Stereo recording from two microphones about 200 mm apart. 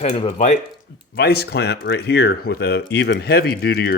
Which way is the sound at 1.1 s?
50° left (ahead or behind).